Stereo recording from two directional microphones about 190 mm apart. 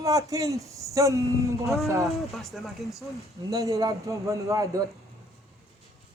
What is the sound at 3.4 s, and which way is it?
Speech, 15° right (ahead or behind).